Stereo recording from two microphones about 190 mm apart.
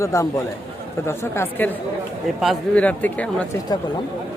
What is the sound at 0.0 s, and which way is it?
Speech, 15° left (ahead or behind).